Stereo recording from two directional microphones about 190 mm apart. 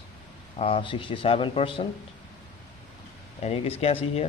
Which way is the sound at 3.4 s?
30° left (ahead or behind).